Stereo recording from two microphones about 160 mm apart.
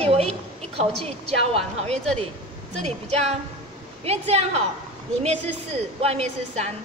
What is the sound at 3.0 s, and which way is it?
Speech, 40° right (ahead or behind).